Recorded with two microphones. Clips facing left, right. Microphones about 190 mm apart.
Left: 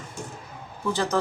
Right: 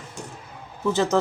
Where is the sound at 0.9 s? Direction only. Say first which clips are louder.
Right 4 dB; 25° right (ahead or behind).